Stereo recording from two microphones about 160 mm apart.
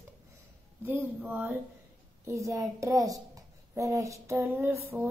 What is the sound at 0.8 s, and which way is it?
A child's voice, 10° right (ahead or behind).